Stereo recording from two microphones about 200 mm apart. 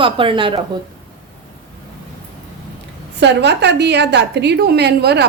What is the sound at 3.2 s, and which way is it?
A woman's voice, 60° right (ahead or behind).